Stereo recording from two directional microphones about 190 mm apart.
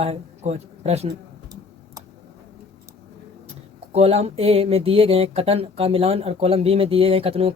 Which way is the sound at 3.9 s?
35° right (ahead or behind).